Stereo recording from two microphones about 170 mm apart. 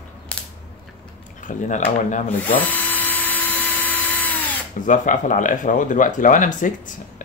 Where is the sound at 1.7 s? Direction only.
45° left (ahead or behind).